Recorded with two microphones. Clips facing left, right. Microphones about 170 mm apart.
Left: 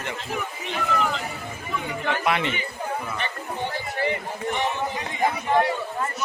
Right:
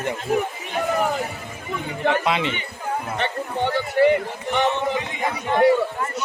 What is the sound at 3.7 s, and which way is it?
A man's voice, 70° right (ahead or behind).